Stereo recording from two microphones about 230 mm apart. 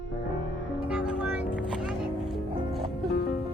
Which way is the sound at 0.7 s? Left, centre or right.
Centre.